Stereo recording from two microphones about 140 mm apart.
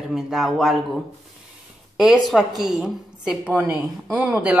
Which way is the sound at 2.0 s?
Centre (ahead or behind).